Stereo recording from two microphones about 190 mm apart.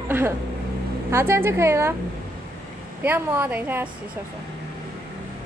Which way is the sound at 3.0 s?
10° right (ahead or behind).